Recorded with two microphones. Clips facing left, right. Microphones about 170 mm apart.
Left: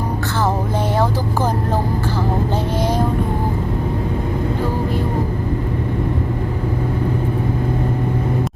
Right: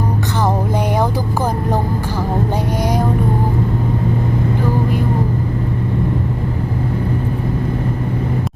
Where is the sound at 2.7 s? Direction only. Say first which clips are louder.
Even; 15° right (ahead or behind).